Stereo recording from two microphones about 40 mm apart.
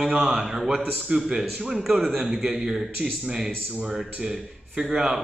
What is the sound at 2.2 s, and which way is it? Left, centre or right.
Speech, centre.